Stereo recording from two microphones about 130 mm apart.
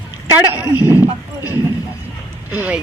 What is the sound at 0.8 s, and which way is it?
Horse, 15° right (ahead or behind).